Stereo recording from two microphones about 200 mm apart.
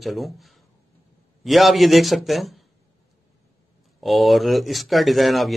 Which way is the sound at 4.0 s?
Centre (ahead or behind).